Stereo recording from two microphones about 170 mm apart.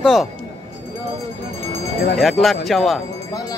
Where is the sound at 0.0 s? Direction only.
Centre (ahead or behind).